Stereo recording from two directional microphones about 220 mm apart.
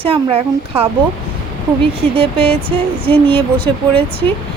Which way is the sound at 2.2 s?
25° right (ahead or behind).